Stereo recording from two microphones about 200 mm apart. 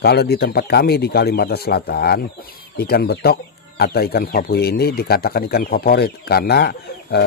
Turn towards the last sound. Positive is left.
turn(degrees=55)  # may be behind; listen again after turning